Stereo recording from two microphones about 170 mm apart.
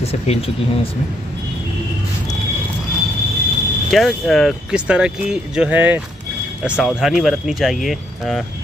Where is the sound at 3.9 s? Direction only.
Centre (ahead or behind).